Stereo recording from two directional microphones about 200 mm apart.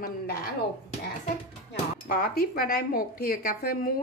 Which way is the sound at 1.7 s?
45° left (ahead or behind).